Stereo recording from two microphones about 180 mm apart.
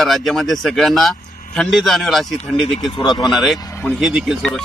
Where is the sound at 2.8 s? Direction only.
25° left (ahead or behind).